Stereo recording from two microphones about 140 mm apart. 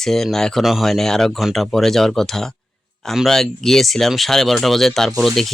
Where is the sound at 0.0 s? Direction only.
5° left (ahead or behind).